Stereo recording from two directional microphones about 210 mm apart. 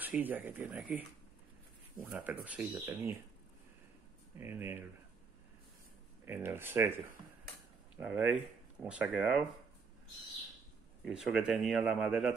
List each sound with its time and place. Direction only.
0.0 s speech: 10° right (ahead or behind)
4.4 s speech: 10° right (ahead or behind)
6.2 s speech: 10° right (ahead or behind)
8.0 s speech: 5° right (ahead or behind)
11.1 s speech: 5° right (ahead or behind)